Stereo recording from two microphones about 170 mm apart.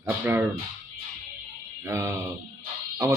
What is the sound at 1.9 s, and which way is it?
Speech, 15° right (ahead or behind).